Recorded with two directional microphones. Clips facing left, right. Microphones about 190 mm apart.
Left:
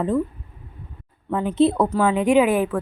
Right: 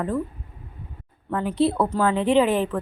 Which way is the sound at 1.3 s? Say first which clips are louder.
Left 3 dB; 20° left (ahead or behind).